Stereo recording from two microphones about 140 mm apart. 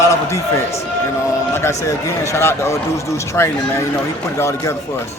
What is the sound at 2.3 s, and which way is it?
Speech, 20° left (ahead or behind).